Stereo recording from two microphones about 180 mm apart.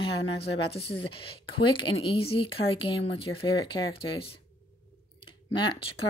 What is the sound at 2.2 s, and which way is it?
Speech, 30° left (ahead or behind).